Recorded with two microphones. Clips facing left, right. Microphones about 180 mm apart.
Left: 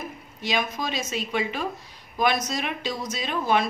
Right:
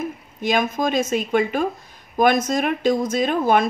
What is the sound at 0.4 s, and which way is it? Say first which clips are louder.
Speech: right 7 dB; 50° right (ahead or behind).